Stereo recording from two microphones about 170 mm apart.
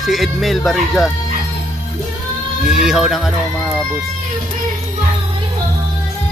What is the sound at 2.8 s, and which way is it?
Speech, 5° right (ahead or behind).